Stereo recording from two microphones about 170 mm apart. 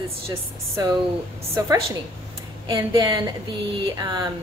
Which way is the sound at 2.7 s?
25° right (ahead or behind).